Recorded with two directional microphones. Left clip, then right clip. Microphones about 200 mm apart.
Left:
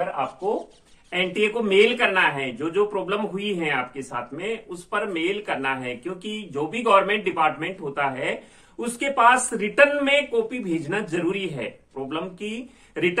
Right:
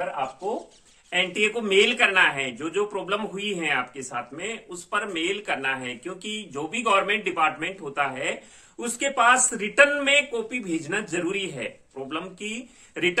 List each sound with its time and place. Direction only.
1.1 s a man's voice: 20° right (ahead or behind)